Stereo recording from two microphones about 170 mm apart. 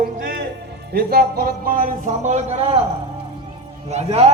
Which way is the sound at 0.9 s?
65° right (ahead or behind).